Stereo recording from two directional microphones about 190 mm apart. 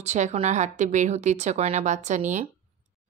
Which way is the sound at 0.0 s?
35° right (ahead or behind).